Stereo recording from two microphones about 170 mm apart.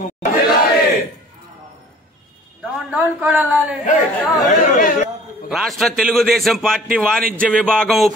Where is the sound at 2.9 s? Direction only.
10° right (ahead or behind).